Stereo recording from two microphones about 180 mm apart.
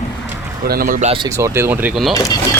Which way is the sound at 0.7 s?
55° right (ahead or behind).